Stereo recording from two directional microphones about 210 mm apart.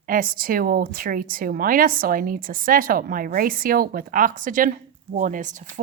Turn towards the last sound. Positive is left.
turn(degrees=-40)  # may be behind; listen again after turning